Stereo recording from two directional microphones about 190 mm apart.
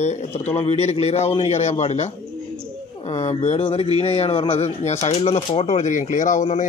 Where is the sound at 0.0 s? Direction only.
35° left (ahead or behind).